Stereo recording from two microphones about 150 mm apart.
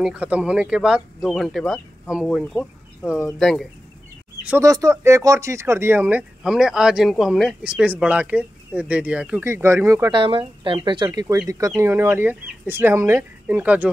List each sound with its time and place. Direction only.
0.0 s speech: 5° right (ahead or behind)
4.5 s speech: 20° right (ahead or behind)
10.1 s speech: 35° right (ahead or behind)
11.1 s speech: 20° right (ahead or behind)